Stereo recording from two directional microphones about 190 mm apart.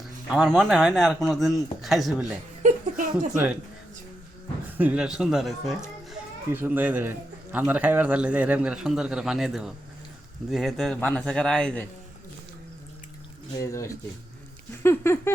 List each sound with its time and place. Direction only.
0.0 s speech: centre (ahead or behind)
2.6 s a sound: 45° right (ahead or behind)
3.3 s speech: 5° right (ahead or behind)
4.8 s speech: 5° right (ahead or behind)
13.6 s speech: 15° left (ahead or behind)
14.8 s a sound: 15° left (ahead or behind)